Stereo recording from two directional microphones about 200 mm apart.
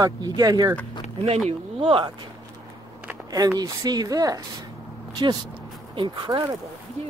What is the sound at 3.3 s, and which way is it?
Speech, 20° right (ahead or behind).